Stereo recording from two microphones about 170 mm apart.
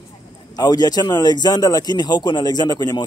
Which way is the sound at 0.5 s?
25° left (ahead or behind).